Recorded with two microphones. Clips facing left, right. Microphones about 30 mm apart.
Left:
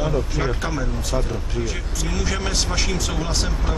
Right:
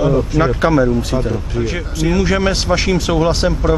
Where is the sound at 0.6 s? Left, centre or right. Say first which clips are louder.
Right 13 dB; right.